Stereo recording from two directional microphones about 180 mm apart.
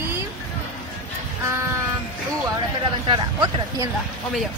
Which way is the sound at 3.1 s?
25° right (ahead or behind).